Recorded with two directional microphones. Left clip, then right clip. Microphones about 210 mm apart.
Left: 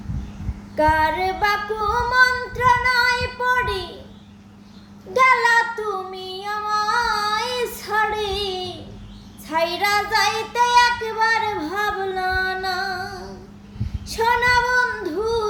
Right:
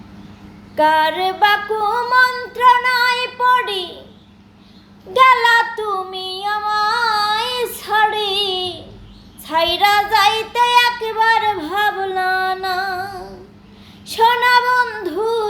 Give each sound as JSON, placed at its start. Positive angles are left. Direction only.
{"t": 0.8, "sound": "female singing", "side_deg": 5}
{"t": 5.1, "sound": "child singing", "side_deg": 10}
{"t": 9.7, "sound": "female singing", "side_deg": 5}
{"t": 10.7, "sound": "child singing", "side_deg": -10}
{"t": 11.0, "sound": "female singing", "side_deg": 5}
{"t": 14.2, "sound": "child singing", "side_deg": 5}